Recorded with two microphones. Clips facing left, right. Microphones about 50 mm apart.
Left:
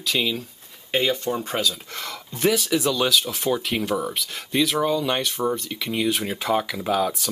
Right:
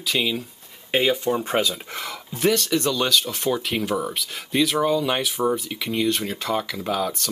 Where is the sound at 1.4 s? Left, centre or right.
Right.